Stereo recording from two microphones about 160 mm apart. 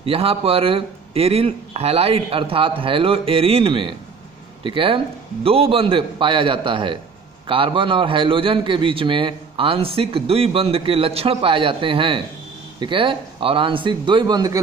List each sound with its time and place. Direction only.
0.0 s a man's voice: 35° right (ahead or behind)